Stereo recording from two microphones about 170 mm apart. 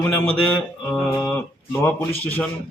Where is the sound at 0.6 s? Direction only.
Centre (ahead or behind).